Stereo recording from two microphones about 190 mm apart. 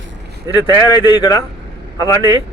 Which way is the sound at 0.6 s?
25° left (ahead or behind).